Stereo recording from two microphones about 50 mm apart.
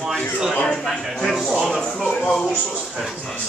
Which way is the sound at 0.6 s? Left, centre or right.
Centre.